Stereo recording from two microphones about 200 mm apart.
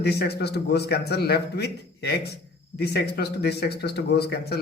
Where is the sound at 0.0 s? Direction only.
55° left (ahead or behind).